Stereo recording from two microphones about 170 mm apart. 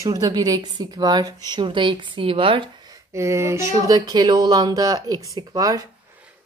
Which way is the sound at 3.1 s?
15° right (ahead or behind).